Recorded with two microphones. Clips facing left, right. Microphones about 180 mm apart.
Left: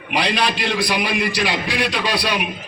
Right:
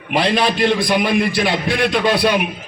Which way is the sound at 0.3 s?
50° right (ahead or behind).